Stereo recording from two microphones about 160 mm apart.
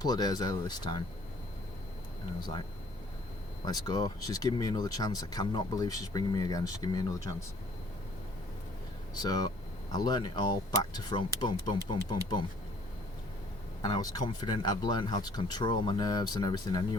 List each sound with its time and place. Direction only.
0.0 s speech: 25° left (ahead or behind)
3.7 s speech: 25° left (ahead or behind)
9.1 s speech: 25° left (ahead or behind)
13.8 s speech: 25° left (ahead or behind)